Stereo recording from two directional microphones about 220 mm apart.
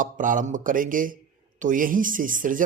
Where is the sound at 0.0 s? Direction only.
35° right (ahead or behind).